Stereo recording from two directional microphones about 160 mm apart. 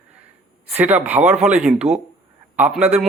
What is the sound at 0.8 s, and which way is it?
A man's voice, 10° right (ahead or behind).